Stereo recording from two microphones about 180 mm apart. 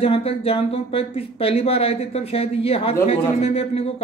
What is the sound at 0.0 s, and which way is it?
Speech, 35° left (ahead or behind).